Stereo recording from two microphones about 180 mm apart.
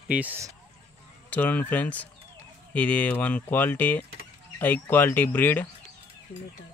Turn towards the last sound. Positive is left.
turn(degrees=10)  # may be behind; listen again after turning